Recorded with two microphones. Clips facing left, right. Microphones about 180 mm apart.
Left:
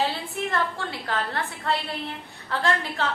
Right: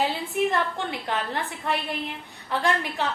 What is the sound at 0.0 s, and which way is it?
A woman's voice, 15° right (ahead or behind).